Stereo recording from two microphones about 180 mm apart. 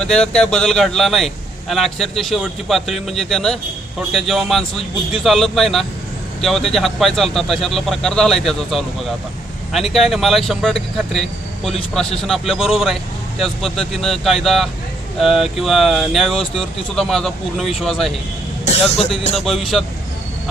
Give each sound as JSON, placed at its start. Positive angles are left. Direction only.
{"t": 0.0, "sound": "speech", "side_deg": 5}
{"t": 18.9, "sound": "speech", "side_deg": 35}
{"t": 19.5, "sound": "speech", "side_deg": 0}